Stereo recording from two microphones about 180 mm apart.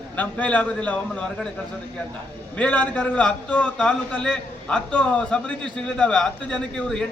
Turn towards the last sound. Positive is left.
turn(degrees=5)  # may be behind; listen again after turning